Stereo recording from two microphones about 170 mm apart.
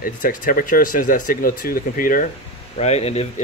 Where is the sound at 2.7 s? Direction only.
40° left (ahead or behind).